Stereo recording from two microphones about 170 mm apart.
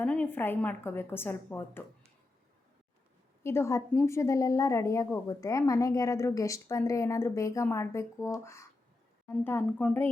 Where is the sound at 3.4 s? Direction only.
15° left (ahead or behind).